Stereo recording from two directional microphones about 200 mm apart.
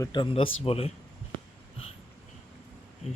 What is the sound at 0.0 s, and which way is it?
Speech, 25° left (ahead or behind).